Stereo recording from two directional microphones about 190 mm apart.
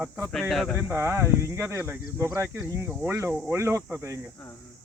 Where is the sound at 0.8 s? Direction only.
15° right (ahead or behind).